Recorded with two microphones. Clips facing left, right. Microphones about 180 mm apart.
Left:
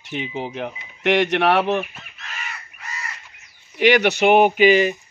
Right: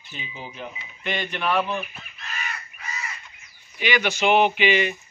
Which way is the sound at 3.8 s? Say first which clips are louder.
Left 8 dB; 70° left (ahead or behind).